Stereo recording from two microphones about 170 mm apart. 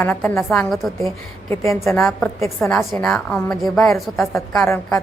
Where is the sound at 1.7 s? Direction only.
15° left (ahead or behind).